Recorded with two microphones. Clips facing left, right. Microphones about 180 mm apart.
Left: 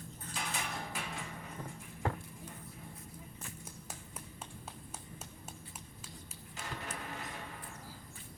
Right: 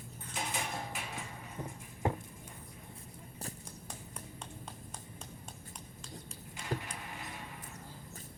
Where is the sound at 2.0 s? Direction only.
20° right (ahead or behind).